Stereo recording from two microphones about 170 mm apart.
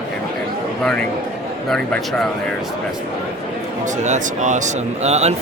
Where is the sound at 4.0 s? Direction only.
45° right (ahead or behind).